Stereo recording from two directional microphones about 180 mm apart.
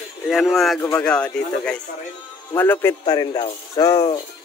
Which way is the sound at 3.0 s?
25° left (ahead or behind).